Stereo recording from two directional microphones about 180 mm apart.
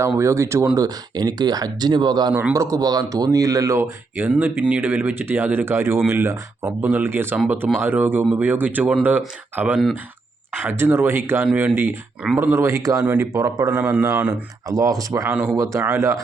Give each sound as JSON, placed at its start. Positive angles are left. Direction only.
{"t": 0.2, "sound": "speech", "side_deg": -15}
{"t": 2.3, "sound": "speech", "side_deg": -10}